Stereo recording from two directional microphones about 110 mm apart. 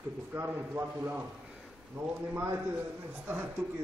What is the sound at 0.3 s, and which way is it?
Speech, 20° right (ahead or behind).